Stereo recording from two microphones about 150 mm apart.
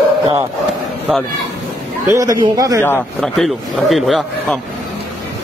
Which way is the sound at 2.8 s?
15° left (ahead or behind).